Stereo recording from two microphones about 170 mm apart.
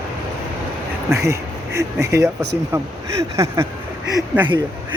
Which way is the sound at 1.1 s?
15° right (ahead or behind).